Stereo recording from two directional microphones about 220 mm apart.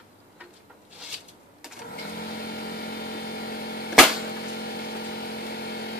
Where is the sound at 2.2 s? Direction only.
45° left (ahead or behind).